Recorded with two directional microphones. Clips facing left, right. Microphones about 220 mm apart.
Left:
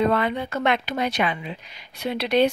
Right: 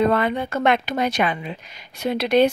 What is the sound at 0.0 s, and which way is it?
Speech, 50° right (ahead or behind).